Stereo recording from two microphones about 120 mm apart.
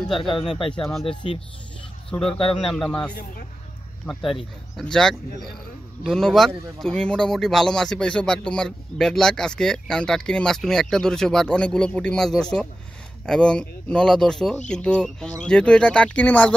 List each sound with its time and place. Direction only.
0.0 s speech: centre (ahead or behind)
0.3 s speech: 45° left (ahead or behind)
0.7 s speech: centre (ahead or behind)
1.0 s speech: 50° left (ahead or behind)
2.0 s speech: 5° left (ahead or behind)